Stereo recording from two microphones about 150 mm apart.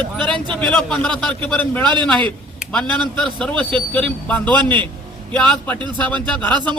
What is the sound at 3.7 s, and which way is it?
Speech, 35° right (ahead or behind).